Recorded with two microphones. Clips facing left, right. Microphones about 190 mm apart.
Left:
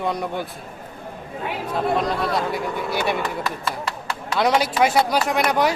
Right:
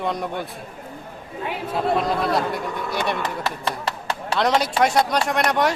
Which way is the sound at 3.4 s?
30° right (ahead or behind).